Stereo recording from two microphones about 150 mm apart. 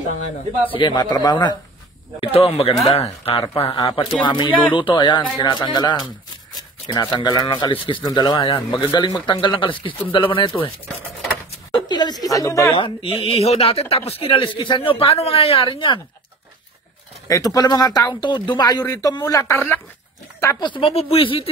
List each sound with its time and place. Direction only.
0.7 s speech: 30° left (ahead or behind)
2.1 s speech: 40° left (ahead or behind)
3.7 s speech: 30° left (ahead or behind)
11.7 s speech: 30° left (ahead or behind)
12.7 s speech: 35° left (ahead or behind)
17.3 s speech: 25° left (ahead or behind)
20.6 s speech: 35° left (ahead or behind)